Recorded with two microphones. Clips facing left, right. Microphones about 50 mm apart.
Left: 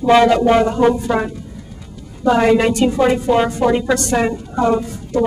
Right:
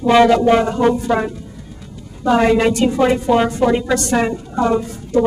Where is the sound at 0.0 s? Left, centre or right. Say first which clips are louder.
Even; centre.